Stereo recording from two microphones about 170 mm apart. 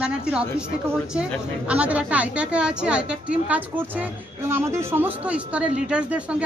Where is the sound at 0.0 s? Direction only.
5° right (ahead or behind).